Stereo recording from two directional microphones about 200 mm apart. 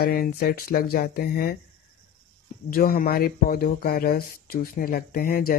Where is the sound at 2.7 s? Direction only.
45° left (ahead or behind).